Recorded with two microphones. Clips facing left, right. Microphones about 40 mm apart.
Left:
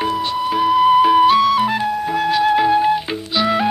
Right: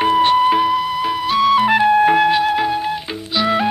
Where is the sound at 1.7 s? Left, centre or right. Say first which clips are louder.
Right 7 dB; right.